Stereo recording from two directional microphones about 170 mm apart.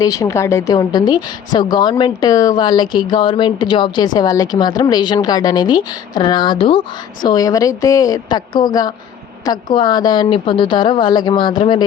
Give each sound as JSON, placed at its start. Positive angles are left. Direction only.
{"t": 0.0, "sound": "speech", "side_deg": 20}